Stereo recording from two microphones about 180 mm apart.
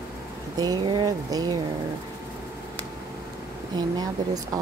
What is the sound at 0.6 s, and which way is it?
Speech, 25° right (ahead or behind).